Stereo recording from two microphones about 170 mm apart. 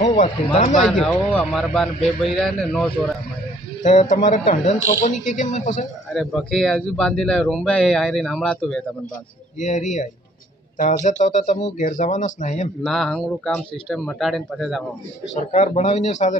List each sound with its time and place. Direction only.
0.6 s a woman's voice: 50° left (ahead or behind)
0.8 s speech: 5° left (ahead or behind)
3.8 s a woman's voice: 45° left (ahead or behind)
6.1 s speech: centre (ahead or behind)
9.6 s a woman's voice: 45° left (ahead or behind)
12.8 s speech: 5° left (ahead or behind)
15.3 s a man's voice: 40° left (ahead or behind)